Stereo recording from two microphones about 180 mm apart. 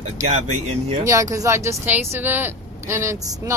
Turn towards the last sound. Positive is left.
turn(degrees=-15)  # may be behind; listen again after turning